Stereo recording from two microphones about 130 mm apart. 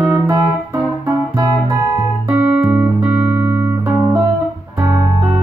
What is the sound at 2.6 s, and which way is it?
Music, 15° right (ahead or behind).